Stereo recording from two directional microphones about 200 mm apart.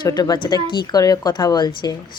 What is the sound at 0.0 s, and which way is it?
A woman's voice, 20° left (ahead or behind).